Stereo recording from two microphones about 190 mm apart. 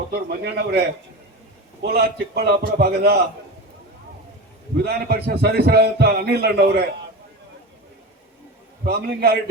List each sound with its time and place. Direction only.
0.1 s a man's voice: 60° right (ahead or behind)
4.8 s a man's voice: 55° right (ahead or behind)
8.8 s a man's voice: 55° right (ahead or behind)